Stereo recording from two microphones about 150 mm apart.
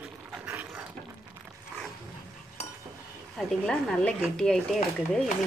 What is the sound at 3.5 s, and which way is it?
Speech, 5° left (ahead or behind).